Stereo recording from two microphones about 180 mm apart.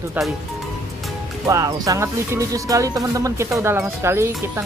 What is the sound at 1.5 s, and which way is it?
A woman's voice, 15° right (ahead or behind).